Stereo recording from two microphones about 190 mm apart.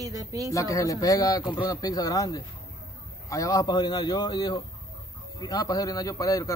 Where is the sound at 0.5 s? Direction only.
15° left (ahead or behind).